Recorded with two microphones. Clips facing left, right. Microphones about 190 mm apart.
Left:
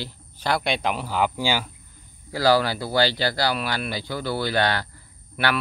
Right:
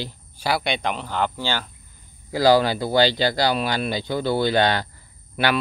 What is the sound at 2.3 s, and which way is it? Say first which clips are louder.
Speech: right 3 dB; 20° right (ahead or behind).